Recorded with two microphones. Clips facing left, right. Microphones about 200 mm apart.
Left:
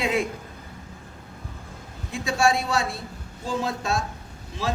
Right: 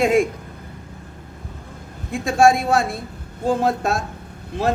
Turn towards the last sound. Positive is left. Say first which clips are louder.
# right 7 dB
turn(degrees=-60)  # may be behind; listen again after turning